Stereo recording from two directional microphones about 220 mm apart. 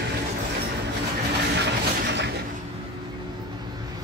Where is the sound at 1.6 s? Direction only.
50° right (ahead or behind).